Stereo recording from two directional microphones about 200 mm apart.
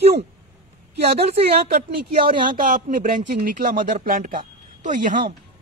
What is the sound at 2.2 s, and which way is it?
Speech, 45° right (ahead or behind).